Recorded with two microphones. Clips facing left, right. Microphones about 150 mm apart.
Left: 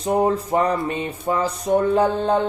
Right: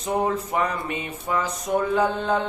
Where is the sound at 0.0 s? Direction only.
30° left (ahead or behind).